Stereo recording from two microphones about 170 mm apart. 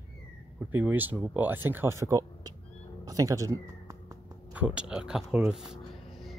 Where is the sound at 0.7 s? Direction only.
10° right (ahead or behind).